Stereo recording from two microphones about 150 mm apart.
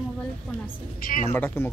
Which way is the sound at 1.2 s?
15° left (ahead or behind).